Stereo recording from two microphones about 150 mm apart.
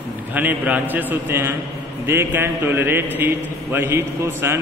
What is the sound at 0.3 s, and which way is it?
A man's voice, 10° right (ahead or behind).